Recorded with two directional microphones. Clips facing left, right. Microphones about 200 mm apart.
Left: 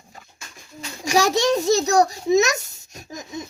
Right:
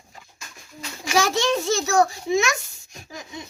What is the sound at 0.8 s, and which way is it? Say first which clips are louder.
A child's voice: left 2 dB; 40° left (ahead or behind).